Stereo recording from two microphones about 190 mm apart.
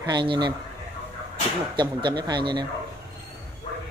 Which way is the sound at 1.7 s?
25° right (ahead or behind).